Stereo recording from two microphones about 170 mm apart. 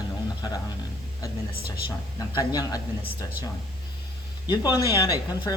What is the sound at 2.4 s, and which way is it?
Speech, 20° left (ahead or behind).